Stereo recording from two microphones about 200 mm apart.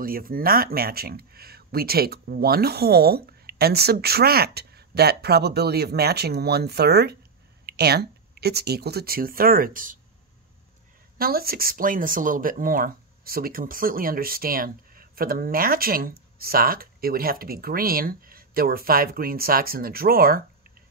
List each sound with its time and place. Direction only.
0.0 s speech: 45° right (ahead or behind)
11.1 s speech: 50° right (ahead or behind)